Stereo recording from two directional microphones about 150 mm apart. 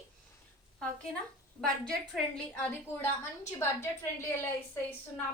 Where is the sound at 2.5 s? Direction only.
10° left (ahead or behind).